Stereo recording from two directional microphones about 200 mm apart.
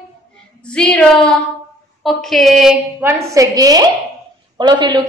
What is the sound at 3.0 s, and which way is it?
A woman's voice, 15° right (ahead or behind).